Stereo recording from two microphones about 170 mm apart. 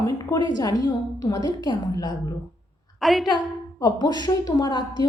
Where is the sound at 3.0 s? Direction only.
Centre (ahead or behind).